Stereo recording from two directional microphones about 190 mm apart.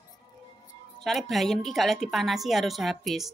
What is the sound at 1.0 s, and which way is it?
A woman's voice, centre (ahead or behind).